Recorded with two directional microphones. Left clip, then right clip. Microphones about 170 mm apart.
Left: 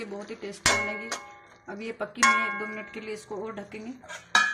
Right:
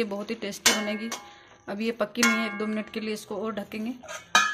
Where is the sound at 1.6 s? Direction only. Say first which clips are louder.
Right 6 dB; 55° right (ahead or behind).